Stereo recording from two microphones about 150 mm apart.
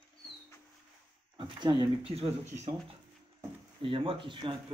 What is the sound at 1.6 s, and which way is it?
Speech, 30° right (ahead or behind).